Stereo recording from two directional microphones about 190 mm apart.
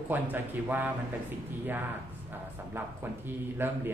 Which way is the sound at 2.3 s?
10° right (ahead or behind).